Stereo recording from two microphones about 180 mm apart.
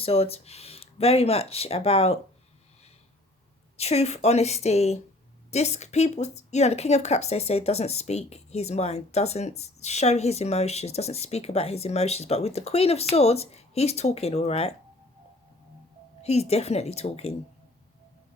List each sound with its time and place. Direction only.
0.0 s a woman's voice: 35° left (ahead or behind)
3.8 s a woman's voice: 35° left (ahead or behind)
16.2 s a woman's voice: 35° left (ahead or behind)